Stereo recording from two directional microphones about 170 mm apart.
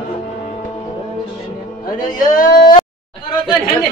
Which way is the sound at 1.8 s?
55° left (ahead or behind).